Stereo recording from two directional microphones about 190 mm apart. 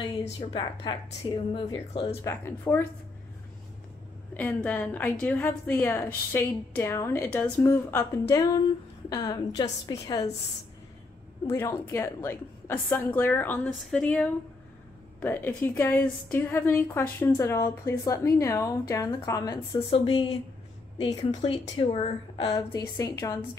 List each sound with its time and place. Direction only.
0.4 s a woman's voice: 25° left (ahead or behind)
2.2 s a woman's voice: 10° left (ahead or behind)
4.3 s a woman's voice: 10° left (ahead or behind)
11.4 s a woman's voice: 15° left (ahead or behind)